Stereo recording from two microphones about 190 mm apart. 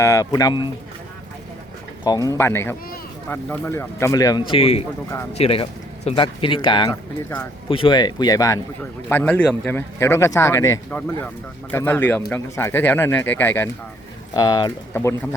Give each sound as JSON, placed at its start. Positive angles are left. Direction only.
{"t": 0.0, "sound": "speech", "side_deg": 15}
{"t": 2.0, "sound": "speech", "side_deg": 20}